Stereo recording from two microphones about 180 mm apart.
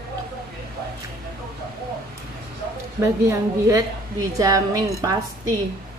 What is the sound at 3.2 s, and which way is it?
A woman's voice, 15° right (ahead or behind).